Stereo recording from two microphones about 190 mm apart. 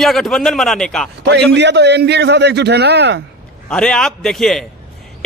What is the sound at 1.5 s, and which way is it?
A man's voice, 65° right (ahead or behind).